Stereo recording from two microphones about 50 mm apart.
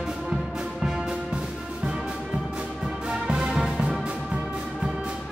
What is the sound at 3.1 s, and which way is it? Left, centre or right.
Music, centre.